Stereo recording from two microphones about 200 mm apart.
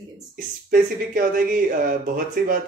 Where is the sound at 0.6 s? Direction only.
45° right (ahead or behind).